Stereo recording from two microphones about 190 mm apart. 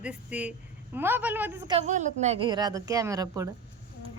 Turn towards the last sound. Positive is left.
turn(degrees=-20)  # may be behind; listen again after turning